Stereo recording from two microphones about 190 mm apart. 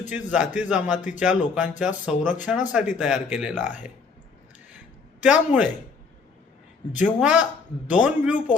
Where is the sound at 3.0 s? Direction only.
5° right (ahead or behind).